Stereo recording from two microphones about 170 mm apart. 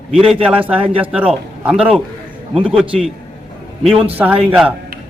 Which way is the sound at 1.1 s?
5° right (ahead or behind).